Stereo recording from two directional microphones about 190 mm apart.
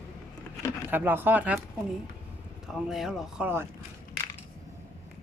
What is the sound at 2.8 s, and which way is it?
Speech, centre (ahead or behind).